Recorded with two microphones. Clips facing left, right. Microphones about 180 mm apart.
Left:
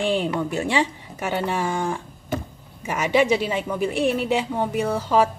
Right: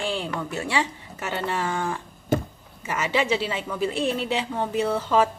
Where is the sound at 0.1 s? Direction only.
20° left (ahead or behind).